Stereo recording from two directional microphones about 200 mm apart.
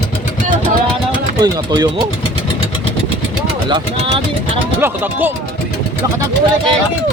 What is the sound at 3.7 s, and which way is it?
Speech, 20° right (ahead or behind).